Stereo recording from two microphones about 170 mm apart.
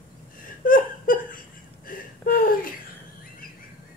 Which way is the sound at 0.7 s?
55° left (ahead or behind).